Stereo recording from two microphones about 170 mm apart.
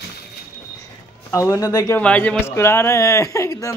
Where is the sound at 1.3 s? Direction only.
20° left (ahead or behind).